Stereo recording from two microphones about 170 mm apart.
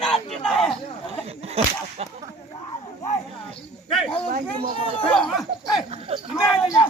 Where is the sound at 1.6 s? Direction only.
35° right (ahead or behind).